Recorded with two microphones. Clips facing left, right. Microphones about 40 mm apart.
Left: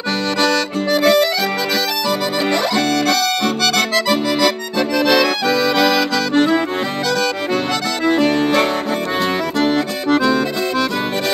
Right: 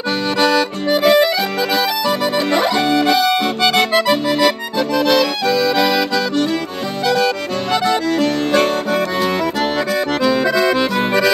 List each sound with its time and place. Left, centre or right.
0.4 s accordion: centre
4.9 s accordion: centre